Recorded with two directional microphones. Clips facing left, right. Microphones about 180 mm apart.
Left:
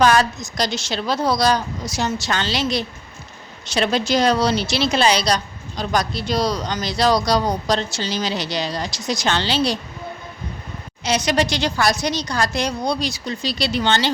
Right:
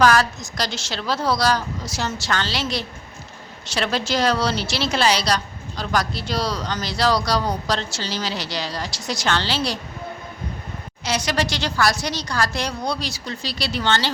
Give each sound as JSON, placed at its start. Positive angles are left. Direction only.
{"t": 0.0, "sound": "a woman's voice", "side_deg": 20}
{"t": 11.0, "sound": "a woman's voice", "side_deg": 20}